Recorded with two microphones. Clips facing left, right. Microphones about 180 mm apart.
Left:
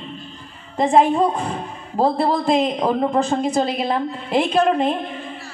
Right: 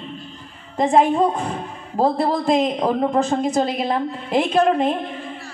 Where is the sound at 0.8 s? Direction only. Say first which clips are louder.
Even; 45° right (ahead or behind).